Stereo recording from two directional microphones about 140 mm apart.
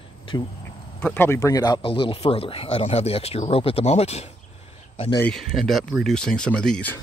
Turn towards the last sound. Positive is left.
turn(degrees=10)  # may be behind; listen again after turning